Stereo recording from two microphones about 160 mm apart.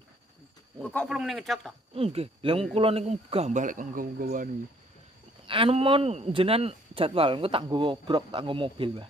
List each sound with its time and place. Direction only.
0.7 s speech: 5° left (ahead or behind)
2.0 s speech: 40° right (ahead or behind); by 4.5 s 60° right (ahead or behind)
5.5 s speech: 35° right (ahead or behind)